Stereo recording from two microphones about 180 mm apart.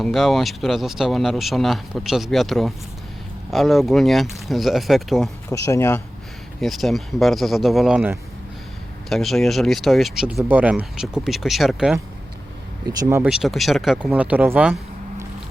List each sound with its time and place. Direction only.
0.0 s speech: centre (ahead or behind)
5.5 s speech: 15° left (ahead or behind)
6.6 s speech: centre (ahead or behind)
12.8 s speech: 20° right (ahead or behind)
13.3 s speech: centre (ahead or behind)